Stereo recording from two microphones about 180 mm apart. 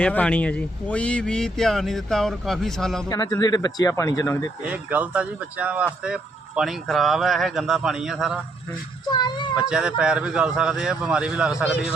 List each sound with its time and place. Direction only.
0.0 s speech: 5° left (ahead or behind)
3.1 s speech: 20° left (ahead or behind)
4.6 s speech: 10° right (ahead or behind)
9.6 s speech: 5° right (ahead or behind)